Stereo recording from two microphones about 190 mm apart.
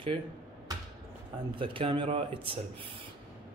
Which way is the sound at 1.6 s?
25° right (ahead or behind).